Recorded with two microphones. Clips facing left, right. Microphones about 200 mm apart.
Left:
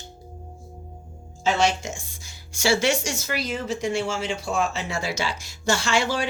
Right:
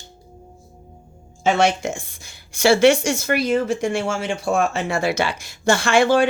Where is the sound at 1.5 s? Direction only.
60° right (ahead or behind).